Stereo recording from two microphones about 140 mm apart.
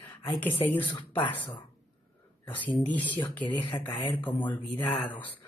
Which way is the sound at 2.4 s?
10° left (ahead or behind).